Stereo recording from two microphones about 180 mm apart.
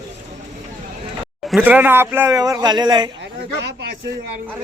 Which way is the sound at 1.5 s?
10° right (ahead or behind).